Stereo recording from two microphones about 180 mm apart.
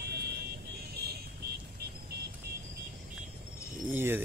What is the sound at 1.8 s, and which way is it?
Music, 65° right (ahead or behind).